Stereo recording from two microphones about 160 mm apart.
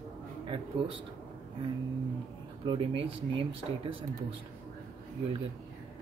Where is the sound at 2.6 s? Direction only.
35° right (ahead or behind).